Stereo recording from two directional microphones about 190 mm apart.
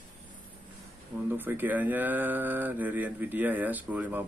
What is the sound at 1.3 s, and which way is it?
Speech, 10° right (ahead or behind).